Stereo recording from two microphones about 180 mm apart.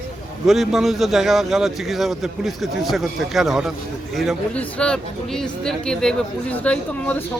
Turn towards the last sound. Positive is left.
turn(degrees=5)  # may be behind; listen again after turning